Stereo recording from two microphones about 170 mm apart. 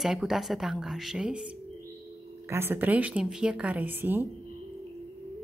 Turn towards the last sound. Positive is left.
turn(degrees=-10)  # may be behind; listen again after turning